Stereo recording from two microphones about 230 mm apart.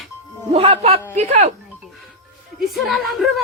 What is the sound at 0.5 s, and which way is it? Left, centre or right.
Speech, right.